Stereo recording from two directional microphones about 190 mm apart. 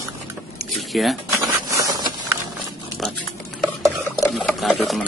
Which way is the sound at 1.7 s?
15° right (ahead or behind).